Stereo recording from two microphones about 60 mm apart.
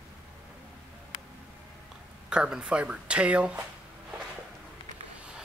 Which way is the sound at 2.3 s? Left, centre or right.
Centre.